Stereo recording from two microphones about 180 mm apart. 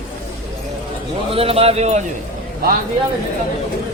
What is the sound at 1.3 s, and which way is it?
Speech, 30° right (ahead or behind).